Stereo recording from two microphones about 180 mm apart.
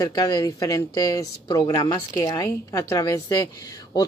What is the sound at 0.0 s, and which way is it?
Speech, 20° left (ahead or behind).